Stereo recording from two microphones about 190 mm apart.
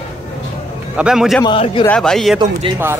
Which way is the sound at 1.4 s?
25° left (ahead or behind).